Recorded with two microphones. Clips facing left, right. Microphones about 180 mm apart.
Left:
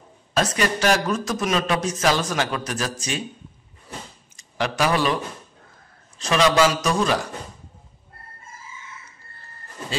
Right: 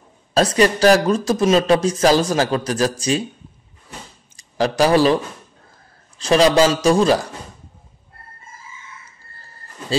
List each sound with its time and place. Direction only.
0.3 s speech: 35° right (ahead or behind)
4.4 s speech: 35° right (ahead or behind)